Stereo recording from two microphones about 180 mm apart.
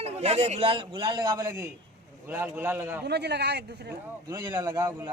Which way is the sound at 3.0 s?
70° right (ahead or behind).